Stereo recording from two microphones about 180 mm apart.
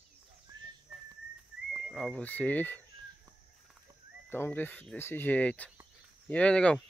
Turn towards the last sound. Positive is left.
turn(degrees=5)  # may be behind; listen again after turning